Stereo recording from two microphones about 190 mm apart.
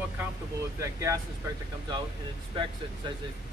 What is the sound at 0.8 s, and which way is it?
Speech, 15° right (ahead or behind).